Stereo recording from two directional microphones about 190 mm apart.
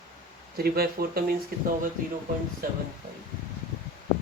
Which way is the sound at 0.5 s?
55° right (ahead or behind).